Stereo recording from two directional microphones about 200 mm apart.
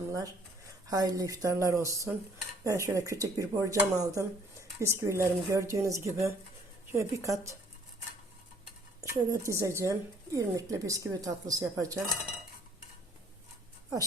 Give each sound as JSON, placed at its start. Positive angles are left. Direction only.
{"t": 0.9, "sound": "a woman's voice", "side_deg": -20}
{"t": 9.0, "sound": "a woman's voice", "side_deg": -15}